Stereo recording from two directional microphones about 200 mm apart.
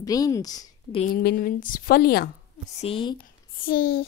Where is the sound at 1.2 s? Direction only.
45° left (ahead or behind).